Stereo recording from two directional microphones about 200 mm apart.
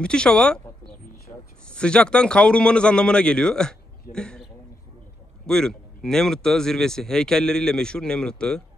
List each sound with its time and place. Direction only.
0.0 s speech: 5° left (ahead or behind)
1.3 s a sound: 30° left (ahead or behind)
1.7 s speech: 5° left (ahead or behind)
5.5 s speech: 5° left (ahead or behind)